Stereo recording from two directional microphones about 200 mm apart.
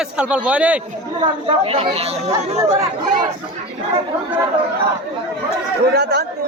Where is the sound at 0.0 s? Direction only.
5° right (ahead or behind).